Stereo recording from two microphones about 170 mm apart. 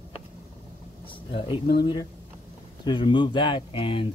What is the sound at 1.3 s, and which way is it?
Speech, 30° left (ahead or behind).